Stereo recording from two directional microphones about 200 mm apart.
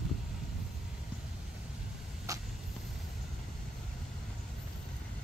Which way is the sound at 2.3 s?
15° right (ahead or behind).